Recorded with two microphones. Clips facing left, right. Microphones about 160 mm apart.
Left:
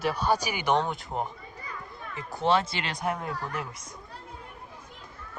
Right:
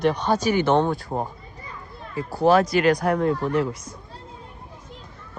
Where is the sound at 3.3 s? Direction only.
20° right (ahead or behind).